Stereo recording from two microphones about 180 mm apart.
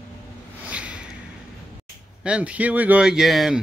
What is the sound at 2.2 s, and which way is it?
Speech, 5° right (ahead or behind).